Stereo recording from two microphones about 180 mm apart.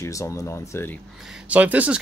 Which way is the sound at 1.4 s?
10° right (ahead or behind).